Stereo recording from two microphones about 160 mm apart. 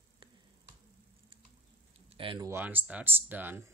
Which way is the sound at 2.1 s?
35° right (ahead or behind).